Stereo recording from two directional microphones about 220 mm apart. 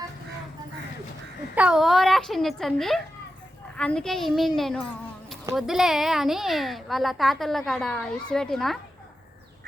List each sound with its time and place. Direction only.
1.5 s a woman's voice: 5° right (ahead or behind)